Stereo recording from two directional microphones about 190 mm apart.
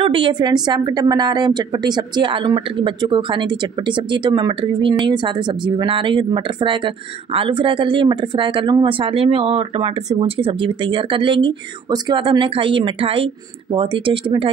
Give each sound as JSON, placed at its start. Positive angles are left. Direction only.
{"t": 0.0, "sound": "speech", "side_deg": -25}